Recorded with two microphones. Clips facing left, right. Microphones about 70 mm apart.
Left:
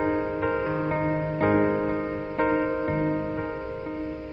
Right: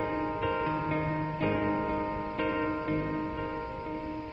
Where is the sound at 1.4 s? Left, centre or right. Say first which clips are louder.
Left 9 dB; left.